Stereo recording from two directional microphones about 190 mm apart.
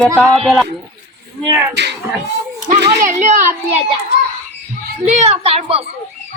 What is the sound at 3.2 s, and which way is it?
Speech, 40° right (ahead or behind).